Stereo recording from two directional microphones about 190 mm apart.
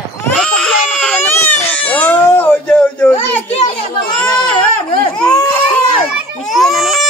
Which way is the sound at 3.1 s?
35° left (ahead or behind).